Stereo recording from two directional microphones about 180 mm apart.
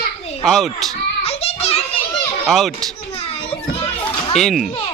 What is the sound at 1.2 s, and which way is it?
Children playing, 35° left (ahead or behind).